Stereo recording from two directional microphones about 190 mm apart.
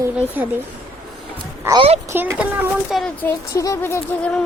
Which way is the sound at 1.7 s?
15° right (ahead or behind).